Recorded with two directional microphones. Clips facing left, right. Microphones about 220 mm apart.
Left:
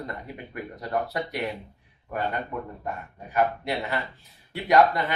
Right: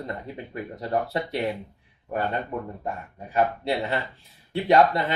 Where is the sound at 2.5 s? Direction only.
30° right (ahead or behind).